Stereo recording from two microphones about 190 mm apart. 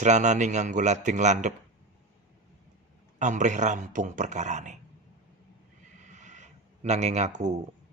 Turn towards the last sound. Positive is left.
turn(degrees=-35)  # may be behind; listen again after turning